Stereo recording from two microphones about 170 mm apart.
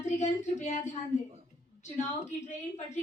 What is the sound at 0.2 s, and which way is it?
Speech, 45° left (ahead or behind).